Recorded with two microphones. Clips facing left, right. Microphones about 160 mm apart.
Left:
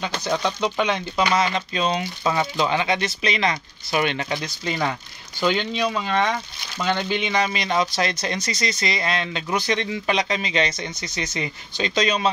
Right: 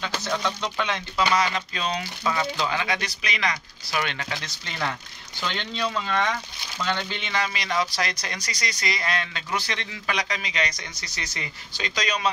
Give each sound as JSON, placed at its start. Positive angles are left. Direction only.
{"t": 0.0, "sound": "speech", "side_deg": 15}